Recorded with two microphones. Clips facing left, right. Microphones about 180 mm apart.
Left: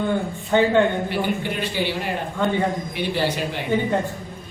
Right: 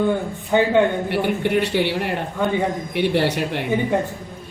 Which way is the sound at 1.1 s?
65° right (ahead or behind).